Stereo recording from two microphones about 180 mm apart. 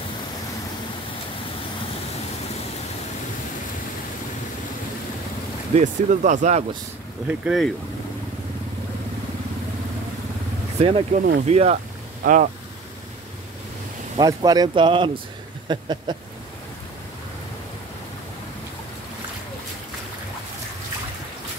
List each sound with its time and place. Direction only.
5.8 s speech: 45° right (ahead or behind)
7.2 s speech: centre (ahead or behind)
10.8 s speech: 30° right (ahead or behind)
12.2 s speech: 50° right (ahead or behind)
14.1 s speech: 20° right (ahead or behind)